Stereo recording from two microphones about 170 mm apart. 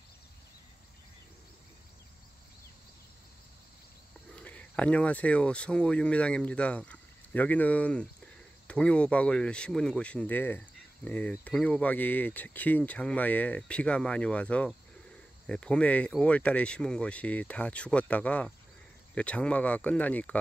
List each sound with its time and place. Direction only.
4.4 s speech: 5° left (ahead or behind)